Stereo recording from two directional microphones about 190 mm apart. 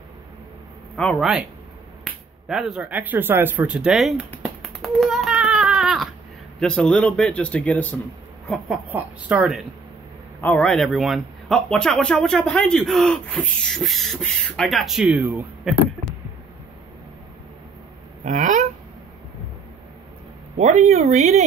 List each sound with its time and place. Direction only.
0.9 s speech: centre (ahead or behind)
2.4 s speech: 5° right (ahead or behind)
4.4 s a sound: centre (ahead or behind)
6.6 s speech: 5° left (ahead or behind)
8.9 s speech: 5° right (ahead or behind)
10.4 s speech: 5° left (ahead or behind)
18.2 s a sound: 40° right (ahead or behind)
20.5 s speech: 35° right (ahead or behind)